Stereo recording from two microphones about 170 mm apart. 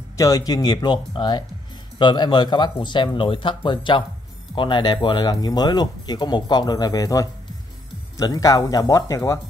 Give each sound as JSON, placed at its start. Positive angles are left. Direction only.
{"t": 0.2, "sound": "speech", "side_deg": 20}